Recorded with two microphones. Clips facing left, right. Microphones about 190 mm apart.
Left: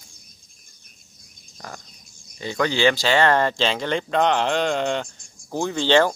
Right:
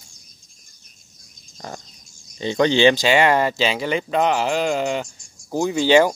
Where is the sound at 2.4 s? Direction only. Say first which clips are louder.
Right 5 dB; 25° right (ahead or behind).